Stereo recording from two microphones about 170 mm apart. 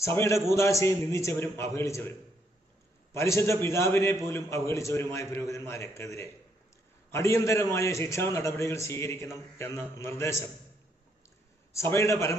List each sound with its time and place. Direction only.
0.0 s a man's voice: 15° left (ahead or behind)
11.7 s a man's voice: 15° left (ahead or behind)